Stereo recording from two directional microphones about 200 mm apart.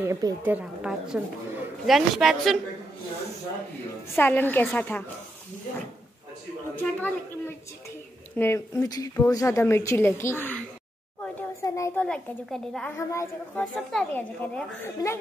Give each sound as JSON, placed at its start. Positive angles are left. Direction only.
{"t": 0.0, "sound": "a woman's voice", "side_deg": -15}
{"t": 4.1, "sound": "a woman's voice", "side_deg": 10}
{"t": 6.7, "sound": "a woman's voice", "side_deg": 10}
{"t": 12.9, "sound": "a woman's voice", "side_deg": 15}